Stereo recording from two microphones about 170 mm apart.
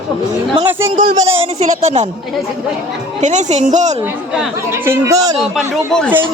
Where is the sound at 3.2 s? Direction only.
45° right (ahead or behind).